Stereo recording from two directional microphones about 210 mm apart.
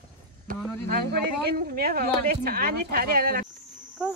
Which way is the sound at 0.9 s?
45° right (ahead or behind).